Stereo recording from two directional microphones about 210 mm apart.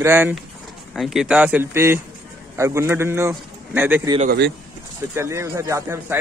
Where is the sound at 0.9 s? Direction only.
Centre (ahead or behind).